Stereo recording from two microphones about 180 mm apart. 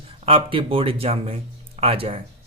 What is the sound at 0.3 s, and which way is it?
A man's voice, 30° right (ahead or behind).